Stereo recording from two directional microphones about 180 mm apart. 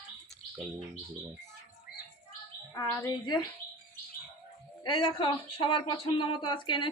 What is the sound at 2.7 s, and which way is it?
Speech, 20° left (ahead or behind).